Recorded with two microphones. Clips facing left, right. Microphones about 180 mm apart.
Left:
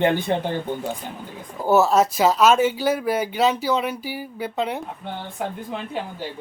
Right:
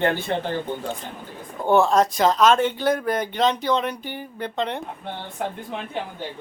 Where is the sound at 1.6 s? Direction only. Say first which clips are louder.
Left 1 dB; 5° left (ahead or behind).